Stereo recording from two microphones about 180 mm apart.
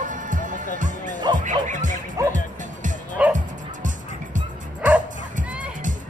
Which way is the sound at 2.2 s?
15° right (ahead or behind).